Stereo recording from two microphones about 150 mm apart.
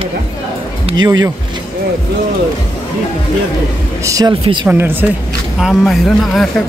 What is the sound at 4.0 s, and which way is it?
Speech, 20° right (ahead or behind).